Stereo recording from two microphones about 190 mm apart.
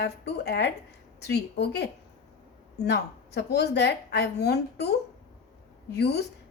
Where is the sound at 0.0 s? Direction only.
60° left (ahead or behind).